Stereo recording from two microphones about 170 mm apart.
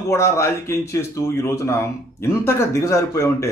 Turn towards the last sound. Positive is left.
turn(degrees=15)  # may be behind; listen again after turning